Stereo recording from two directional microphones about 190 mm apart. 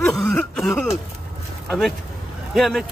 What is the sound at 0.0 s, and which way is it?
Throat clearing, centre (ahead or behind).